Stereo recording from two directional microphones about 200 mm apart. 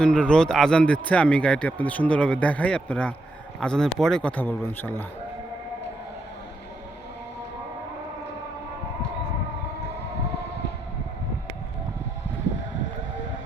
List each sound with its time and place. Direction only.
0.0 s a man's voice: 5° left (ahead or behind)